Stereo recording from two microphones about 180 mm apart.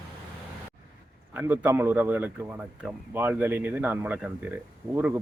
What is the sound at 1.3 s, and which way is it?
A man's voice, 10° right (ahead or behind).